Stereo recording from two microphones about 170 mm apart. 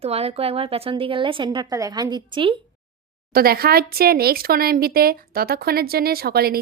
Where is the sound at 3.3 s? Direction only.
60° right (ahead or behind).